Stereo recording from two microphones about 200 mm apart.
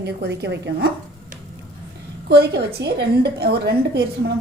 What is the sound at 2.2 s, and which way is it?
A woman's voice, 55° right (ahead or behind).